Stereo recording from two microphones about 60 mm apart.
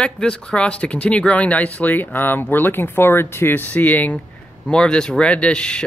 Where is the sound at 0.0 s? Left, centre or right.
Centre.